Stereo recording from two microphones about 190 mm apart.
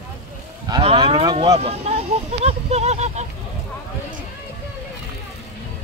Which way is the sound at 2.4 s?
35° right (ahead or behind).